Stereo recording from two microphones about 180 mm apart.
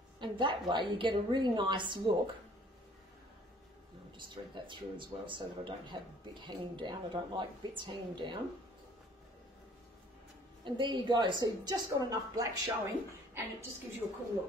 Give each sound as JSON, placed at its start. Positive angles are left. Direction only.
{"t": 0.2, "sound": "a woman's voice", "side_deg": -25}
{"t": 4.2, "sound": "a woman's voice", "side_deg": -25}
{"t": 10.6, "sound": "a woman's voice", "side_deg": -25}